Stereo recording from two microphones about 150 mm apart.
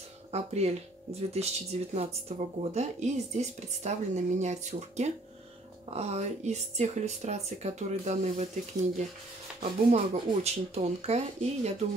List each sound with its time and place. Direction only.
0.3 s speech: 45° right (ahead or behind)
9.6 s speech: 45° right (ahead or behind)